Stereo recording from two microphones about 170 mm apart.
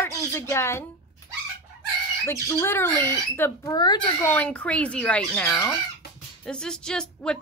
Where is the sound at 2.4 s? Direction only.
15° left (ahead or behind).